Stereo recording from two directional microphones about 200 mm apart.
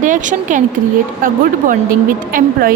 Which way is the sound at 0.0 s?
40° right (ahead or behind).